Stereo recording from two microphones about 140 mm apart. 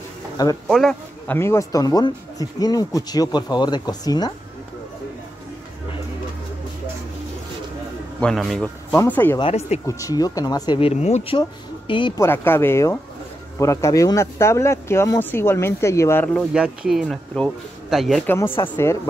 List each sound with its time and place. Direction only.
0.7 s speech: centre (ahead or behind)
1.2 s speech: 15° left (ahead or behind)
8.2 s speech: 5° left (ahead or behind)
8.9 s speech: 15° left (ahead or behind)
9.4 s speech: 50° left (ahead or behind)
9.8 s speech: 25° left (ahead or behind)
10.8 s speech: 50° left (ahead or behind)
12.2 s speech: 15° left (ahead or behind)
16.5 s speech: 5° right (ahead or behind)
18.2 s speech: 15° left (ahead or behind)